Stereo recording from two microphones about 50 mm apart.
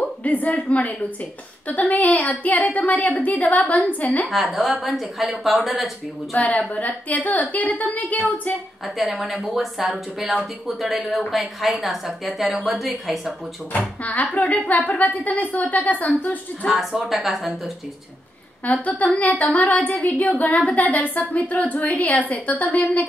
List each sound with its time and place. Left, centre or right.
0.2 s speech: left
4.3 s speech: centre
6.3 s speech: left
8.8 s speech: centre
13.7 s speech: left
16.6 s speech: centre
18.7 s speech: left